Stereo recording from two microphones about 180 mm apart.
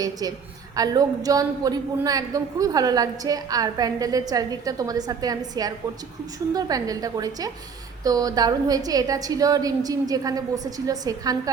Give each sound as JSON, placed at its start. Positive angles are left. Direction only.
{"t": 0.0, "sound": "a woman's voice", "side_deg": -20}